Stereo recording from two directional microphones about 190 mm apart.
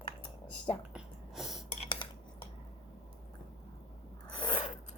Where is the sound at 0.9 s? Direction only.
Centre (ahead or behind).